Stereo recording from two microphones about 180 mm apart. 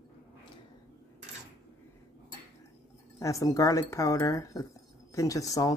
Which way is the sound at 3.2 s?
15° left (ahead or behind).